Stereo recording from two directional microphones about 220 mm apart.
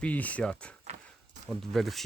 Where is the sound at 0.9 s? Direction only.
30° right (ahead or behind).